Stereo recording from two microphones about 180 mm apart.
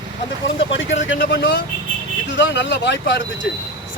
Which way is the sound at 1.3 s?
80° left.